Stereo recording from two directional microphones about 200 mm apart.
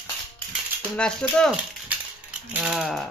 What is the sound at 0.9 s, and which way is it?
Speech, 5° left (ahead or behind).